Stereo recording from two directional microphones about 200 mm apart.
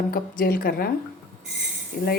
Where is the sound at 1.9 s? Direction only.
50° left (ahead or behind).